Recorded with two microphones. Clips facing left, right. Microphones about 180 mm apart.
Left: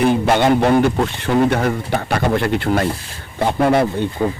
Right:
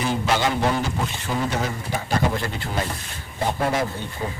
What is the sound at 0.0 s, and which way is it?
A man's voice, 60° left (ahead or behind).